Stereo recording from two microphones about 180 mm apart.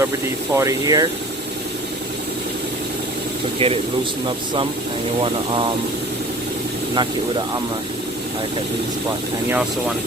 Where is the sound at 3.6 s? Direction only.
30° right (ahead or behind).